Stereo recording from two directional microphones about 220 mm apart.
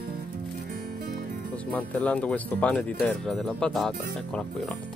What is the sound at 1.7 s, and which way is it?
Speech, 5° left (ahead or behind).